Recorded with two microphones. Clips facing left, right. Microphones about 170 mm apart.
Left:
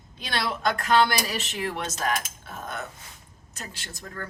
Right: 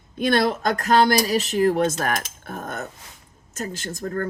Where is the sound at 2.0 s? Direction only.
55° right (ahead or behind).